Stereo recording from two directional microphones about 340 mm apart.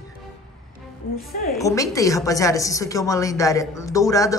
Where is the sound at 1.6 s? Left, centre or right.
Centre.